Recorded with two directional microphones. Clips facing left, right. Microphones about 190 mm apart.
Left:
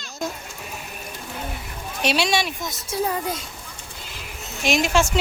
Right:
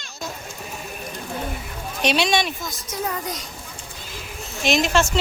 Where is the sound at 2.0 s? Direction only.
5° left (ahead or behind).